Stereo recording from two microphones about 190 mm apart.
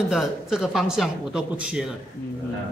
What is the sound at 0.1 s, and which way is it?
A man's voice, 5° right (ahead or behind).